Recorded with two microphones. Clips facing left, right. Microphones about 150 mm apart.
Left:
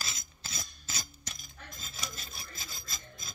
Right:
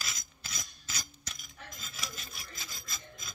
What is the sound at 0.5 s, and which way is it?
Cutlery, 30° left (ahead or behind).